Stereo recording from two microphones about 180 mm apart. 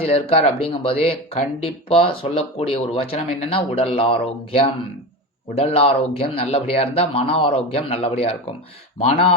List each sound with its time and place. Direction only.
0.0 s speech: 35° left (ahead or behind)